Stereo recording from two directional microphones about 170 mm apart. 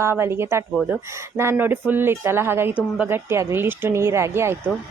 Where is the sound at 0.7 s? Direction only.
Centre (ahead or behind).